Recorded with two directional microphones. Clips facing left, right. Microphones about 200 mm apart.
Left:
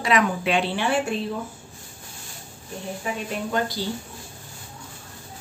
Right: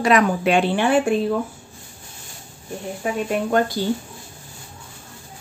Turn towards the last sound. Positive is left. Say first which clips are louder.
# right 6 dB
turn(degrees=-55)  # may be behind; listen again after turning